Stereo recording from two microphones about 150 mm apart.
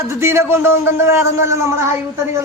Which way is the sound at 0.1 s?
15° right (ahead or behind).